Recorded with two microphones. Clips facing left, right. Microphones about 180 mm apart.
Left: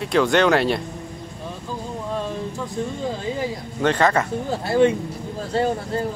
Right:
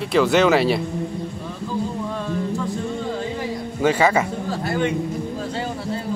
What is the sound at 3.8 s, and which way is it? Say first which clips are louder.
Speech: right 1 dB; 10° right (ahead or behind).